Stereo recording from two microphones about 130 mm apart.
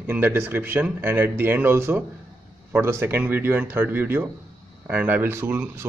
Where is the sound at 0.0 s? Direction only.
15° right (ahead or behind).